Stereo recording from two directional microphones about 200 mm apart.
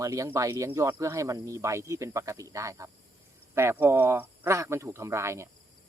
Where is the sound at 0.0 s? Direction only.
15° right (ahead or behind).